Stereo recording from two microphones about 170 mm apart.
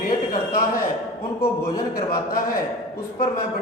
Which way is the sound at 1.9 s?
60° left (ahead or behind).